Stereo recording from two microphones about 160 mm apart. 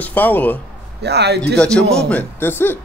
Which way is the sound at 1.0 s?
90° right.